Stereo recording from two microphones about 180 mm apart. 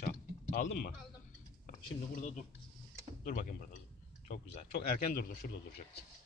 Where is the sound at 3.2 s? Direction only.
45° left (ahead or behind).